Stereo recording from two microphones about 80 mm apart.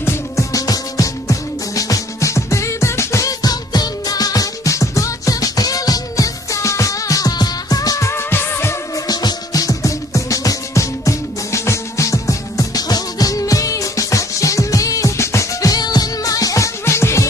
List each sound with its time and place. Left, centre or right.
0.0 s music: left
8.1 s music: left
8.9 s music: left
15.7 s music: left